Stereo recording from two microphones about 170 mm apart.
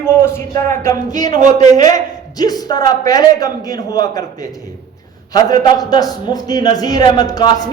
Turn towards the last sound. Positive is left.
turn(degrees=25)  # may be behind; listen again after turning